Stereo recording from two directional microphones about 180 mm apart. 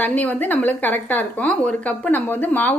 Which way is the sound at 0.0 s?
10° left (ahead or behind).